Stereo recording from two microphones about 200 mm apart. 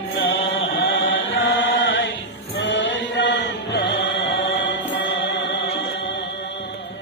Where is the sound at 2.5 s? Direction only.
65° left (ahead or behind).